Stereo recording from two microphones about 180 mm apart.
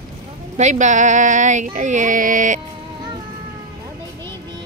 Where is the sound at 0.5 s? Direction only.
40° right (ahead or behind).